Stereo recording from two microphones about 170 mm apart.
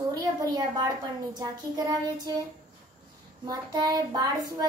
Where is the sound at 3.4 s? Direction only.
20° right (ahead or behind).